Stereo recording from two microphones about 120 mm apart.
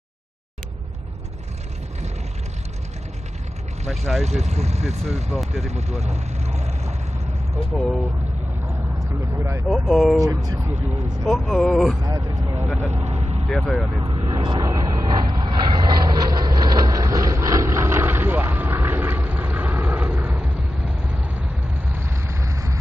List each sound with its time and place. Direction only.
3.9 s speech: centre (ahead or behind)
4.2 s speech: 65° right (ahead or behind)
5.5 s vehicle: 65° right (ahead or behind)
7.7 s speech: centre (ahead or behind)
9.0 s speech: 25° right (ahead or behind)
9.7 s speech: centre (ahead or behind)
10.1 s speech: 30° right (ahead or behind)
11.2 s speech: 5° left (ahead or behind)
12.0 s speech: 30° right (ahead or behind)
12.5 s vehicle: 15° right (ahead or behind)
12.9 s vehicle: 70° right (ahead or behind)
13.5 s speech: 5° left (ahead or behind)
14.0 s vehicle: 40° right (ahead or behind)